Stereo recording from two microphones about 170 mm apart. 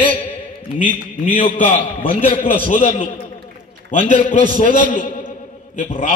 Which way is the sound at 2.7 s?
55° left (ahead or behind).